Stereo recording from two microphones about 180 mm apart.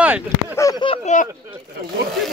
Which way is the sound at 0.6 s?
20° left (ahead or behind).